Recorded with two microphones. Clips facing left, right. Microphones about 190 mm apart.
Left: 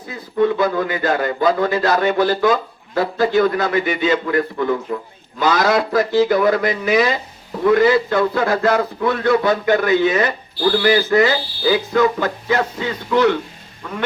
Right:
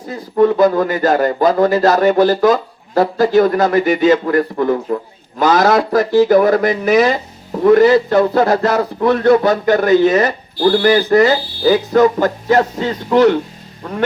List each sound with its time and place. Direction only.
0.1 s a man's voice: 40° right (ahead or behind)